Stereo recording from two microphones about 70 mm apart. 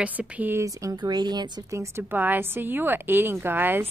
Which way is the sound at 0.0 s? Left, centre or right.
Centre.